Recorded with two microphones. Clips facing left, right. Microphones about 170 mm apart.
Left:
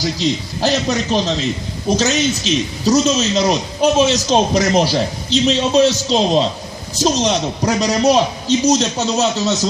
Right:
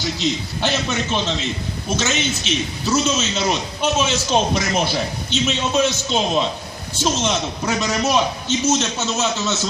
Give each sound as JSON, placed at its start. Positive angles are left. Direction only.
{"t": 0.0, "sound": "a man's voice", "side_deg": 35}